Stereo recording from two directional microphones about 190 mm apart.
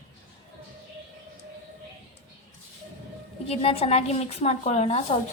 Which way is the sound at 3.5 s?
30° left (ahead or behind).